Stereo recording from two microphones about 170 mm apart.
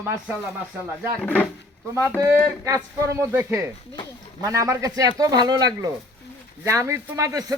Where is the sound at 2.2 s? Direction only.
20° right (ahead or behind).